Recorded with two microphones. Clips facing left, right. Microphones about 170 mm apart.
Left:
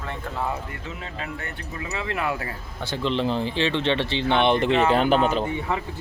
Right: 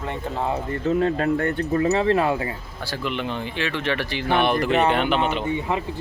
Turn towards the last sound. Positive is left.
turn(degrees=40)  # may be behind; listen again after turning